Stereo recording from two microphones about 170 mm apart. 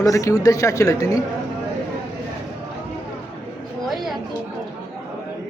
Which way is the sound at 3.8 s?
Centre (ahead or behind).